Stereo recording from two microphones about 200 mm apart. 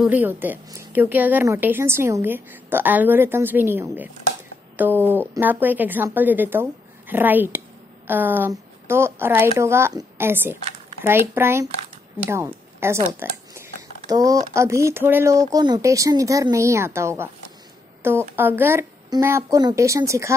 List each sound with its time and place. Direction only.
0.0 s a woman's voice: 10° right (ahead or behind)
13.2 s a sound: 15° right (ahead or behind)
14.5 s a woman's voice: 15° right (ahead or behind)
18.3 s a woman's voice: 10° right (ahead or behind)